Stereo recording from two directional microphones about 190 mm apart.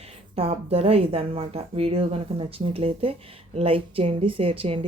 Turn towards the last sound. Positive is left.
turn(degrees=-30)  # may be behind; listen again after turning